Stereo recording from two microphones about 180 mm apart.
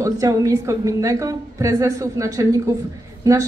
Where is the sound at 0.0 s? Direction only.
20° right (ahead or behind).